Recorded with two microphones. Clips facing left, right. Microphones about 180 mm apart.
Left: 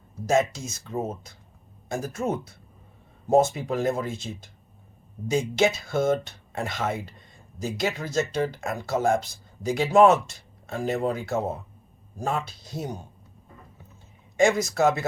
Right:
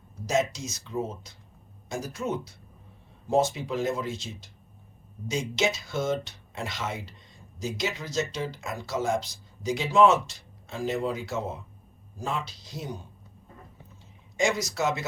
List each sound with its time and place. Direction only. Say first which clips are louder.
0.3 s speech: left 4 dB; 55° left (ahead or behind)
14.3 s speech: left 6 dB; 55° left (ahead or behind)